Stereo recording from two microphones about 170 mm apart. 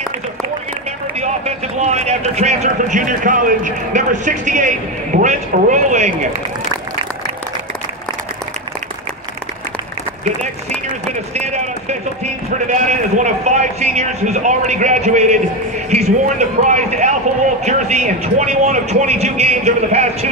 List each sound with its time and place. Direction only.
1.1 s speech: 40° right (ahead or behind)
11.3 s a sound: 40° right (ahead or behind)
12.7 s a man's voice: 45° right (ahead or behind)